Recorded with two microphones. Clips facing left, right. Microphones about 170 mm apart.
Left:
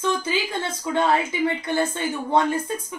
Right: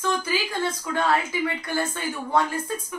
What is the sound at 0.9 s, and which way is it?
Speech, 20° left (ahead or behind).